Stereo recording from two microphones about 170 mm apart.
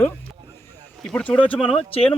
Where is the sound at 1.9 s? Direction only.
35° left (ahead or behind).